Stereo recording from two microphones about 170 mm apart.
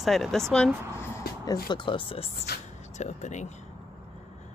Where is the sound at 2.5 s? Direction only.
70° left (ahead or behind).